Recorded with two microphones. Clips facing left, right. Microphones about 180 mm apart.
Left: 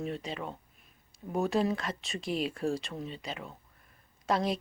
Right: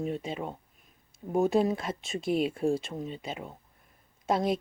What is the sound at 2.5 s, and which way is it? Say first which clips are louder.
Speech: right 4 dB; 25° right (ahead or behind).